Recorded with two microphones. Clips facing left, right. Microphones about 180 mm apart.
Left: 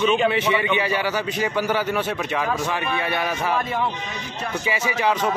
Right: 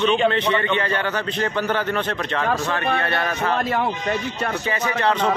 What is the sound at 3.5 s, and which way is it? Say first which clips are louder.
Speech: right 2 dB; 70° right (ahead or behind).